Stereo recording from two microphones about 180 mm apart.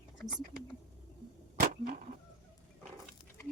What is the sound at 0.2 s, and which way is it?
Speech, centre (ahead or behind).